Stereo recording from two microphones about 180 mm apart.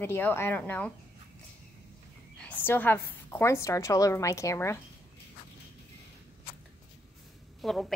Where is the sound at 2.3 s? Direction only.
10° left (ahead or behind).